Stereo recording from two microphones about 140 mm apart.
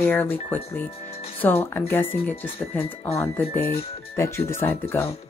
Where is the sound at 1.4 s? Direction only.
15° left (ahead or behind).